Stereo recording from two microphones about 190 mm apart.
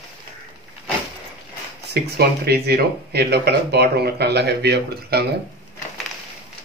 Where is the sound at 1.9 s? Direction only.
55° right (ahead or behind).